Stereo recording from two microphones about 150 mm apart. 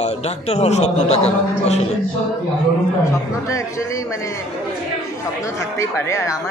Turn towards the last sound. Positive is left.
turn(degrees=20)  # may be behind; listen again after turning